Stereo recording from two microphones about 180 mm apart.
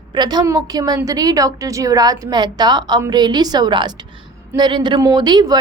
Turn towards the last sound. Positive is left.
turn(degrees=-25)  # may be behind; listen again after turning